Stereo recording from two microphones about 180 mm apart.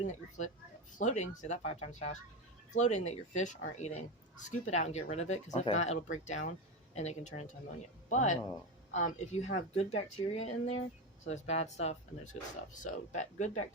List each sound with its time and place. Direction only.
0.0 s speech: 40° left (ahead or behind)